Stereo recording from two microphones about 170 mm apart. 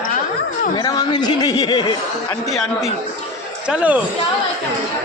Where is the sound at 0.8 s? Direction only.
25° left (ahead or behind).